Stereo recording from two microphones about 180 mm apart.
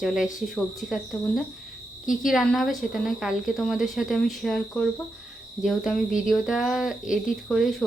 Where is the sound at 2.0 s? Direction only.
50° left (ahead or behind).